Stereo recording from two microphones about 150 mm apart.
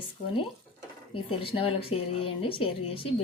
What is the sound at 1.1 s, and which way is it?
A woman's voice, 35° left (ahead or behind).